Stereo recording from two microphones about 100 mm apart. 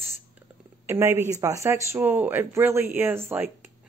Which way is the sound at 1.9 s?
20° right (ahead or behind).